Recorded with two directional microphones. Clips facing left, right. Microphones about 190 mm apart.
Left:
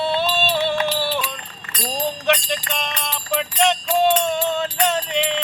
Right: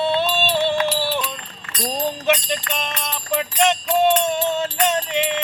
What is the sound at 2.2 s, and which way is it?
Jingle bell, centre (ahead or behind).